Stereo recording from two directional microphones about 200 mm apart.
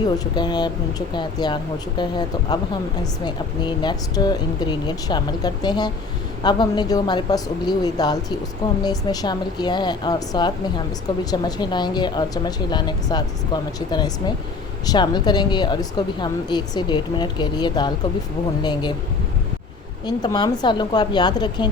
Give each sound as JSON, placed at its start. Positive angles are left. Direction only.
{"t": 0.3, "sound": "a woman's voice", "side_deg": 20}
{"t": 20.1, "sound": "a woman's voice", "side_deg": 20}